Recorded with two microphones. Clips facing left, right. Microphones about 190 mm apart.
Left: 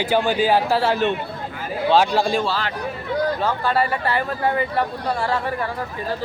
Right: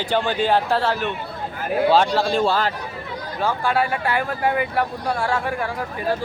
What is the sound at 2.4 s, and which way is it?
Speech, 50° right (ahead or behind).